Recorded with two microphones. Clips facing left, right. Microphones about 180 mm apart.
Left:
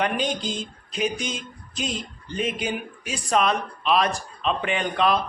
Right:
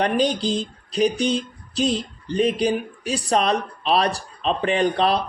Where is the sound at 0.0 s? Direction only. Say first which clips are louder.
Right 5 dB; 35° right (ahead or behind).